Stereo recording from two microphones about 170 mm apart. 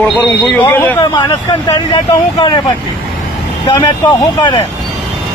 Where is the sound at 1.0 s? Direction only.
25° left (ahead or behind).